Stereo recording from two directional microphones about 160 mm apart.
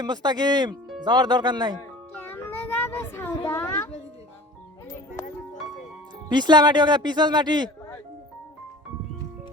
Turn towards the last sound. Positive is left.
turn(degrees=-25)  # may be behind; listen again after turning